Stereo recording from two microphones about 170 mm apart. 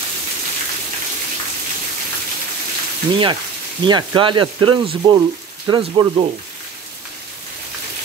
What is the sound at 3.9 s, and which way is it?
Speech, 25° right (ahead or behind).